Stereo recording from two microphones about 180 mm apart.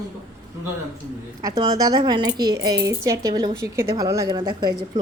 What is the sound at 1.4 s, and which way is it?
A woman's voice, 20° right (ahead or behind).